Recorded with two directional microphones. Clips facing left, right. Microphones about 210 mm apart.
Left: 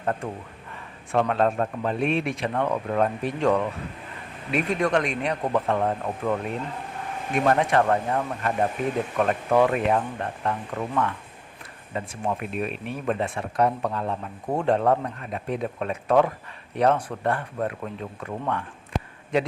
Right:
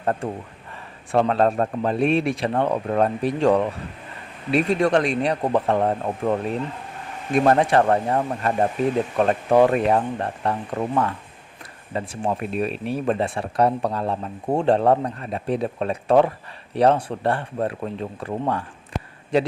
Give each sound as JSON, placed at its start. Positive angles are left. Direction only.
{"t": 1.1, "sound": "speech", "side_deg": -35}
{"t": 7.3, "sound": "speech", "side_deg": -35}